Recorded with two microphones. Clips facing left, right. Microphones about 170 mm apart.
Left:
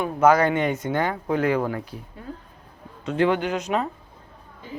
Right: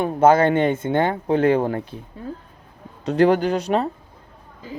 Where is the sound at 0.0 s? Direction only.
30° right (ahead or behind).